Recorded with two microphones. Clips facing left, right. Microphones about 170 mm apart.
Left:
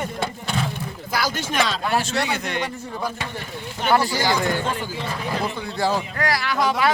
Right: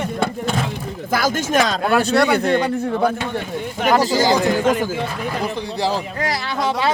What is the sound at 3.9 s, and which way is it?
Speech, 20° right (ahead or behind).